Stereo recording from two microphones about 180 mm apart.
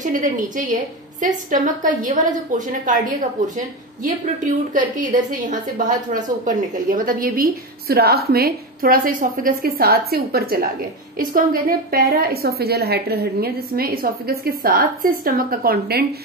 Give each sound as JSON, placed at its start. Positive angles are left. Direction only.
{"t": 0.0, "sound": "a woman's voice", "side_deg": -50}